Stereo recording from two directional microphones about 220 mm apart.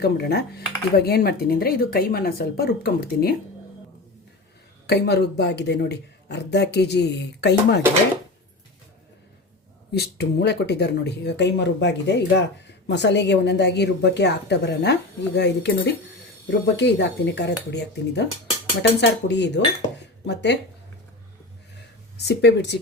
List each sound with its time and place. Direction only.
0.0 s speech: 45° left (ahead or behind)
4.9 s speech: 50° left (ahead or behind)
9.9 s speech: 50° left (ahead or behind)
22.3 s speech: 50° left (ahead or behind)